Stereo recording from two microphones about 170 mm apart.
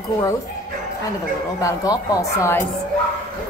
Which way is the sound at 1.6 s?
20° left (ahead or behind).